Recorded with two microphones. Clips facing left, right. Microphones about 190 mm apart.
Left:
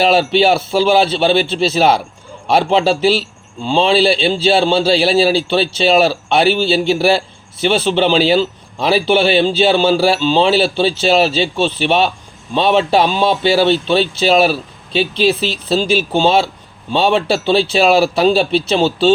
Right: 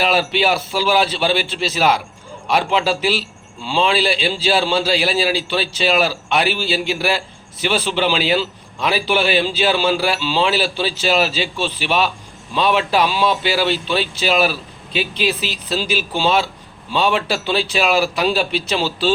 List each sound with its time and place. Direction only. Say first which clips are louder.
0.0 s speech: left 6 dB; 30° left (ahead or behind)